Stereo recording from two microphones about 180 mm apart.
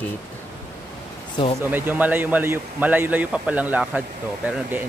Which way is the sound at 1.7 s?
10° right (ahead or behind).